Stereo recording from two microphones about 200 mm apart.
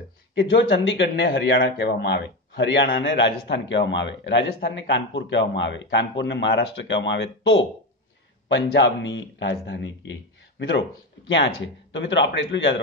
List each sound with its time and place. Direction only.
0.3 s speech: 65° left (ahead or behind)
1.2 s a man's voice: 55° left (ahead or behind)
11.2 s a man's voice: 65° left (ahead or behind)